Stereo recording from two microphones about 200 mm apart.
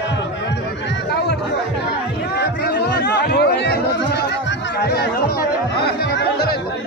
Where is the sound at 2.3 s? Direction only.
55° left (ahead or behind).